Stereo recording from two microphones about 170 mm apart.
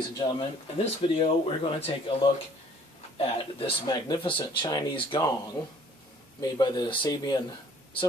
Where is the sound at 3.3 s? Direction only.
30° left (ahead or behind).